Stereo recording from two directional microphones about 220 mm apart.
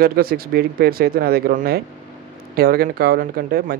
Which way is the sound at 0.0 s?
45° right (ahead or behind).